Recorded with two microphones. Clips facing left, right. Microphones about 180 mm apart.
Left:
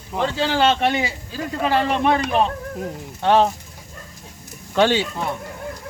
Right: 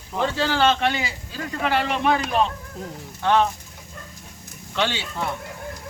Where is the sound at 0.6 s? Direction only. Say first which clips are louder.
Left 3 dB; 25° left (ahead or behind).